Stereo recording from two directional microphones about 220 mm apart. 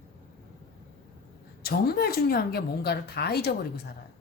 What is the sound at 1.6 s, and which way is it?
A woman's voice, 45° left (ahead or behind).